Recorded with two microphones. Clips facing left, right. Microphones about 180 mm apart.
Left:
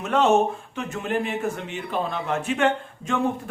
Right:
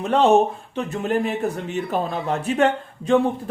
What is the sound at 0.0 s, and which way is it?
A man's voice, 35° right (ahead or behind).